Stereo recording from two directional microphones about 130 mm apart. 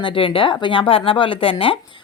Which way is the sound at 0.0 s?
40° left (ahead or behind).